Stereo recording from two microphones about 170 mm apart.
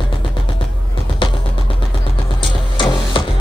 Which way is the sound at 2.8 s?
30° left (ahead or behind).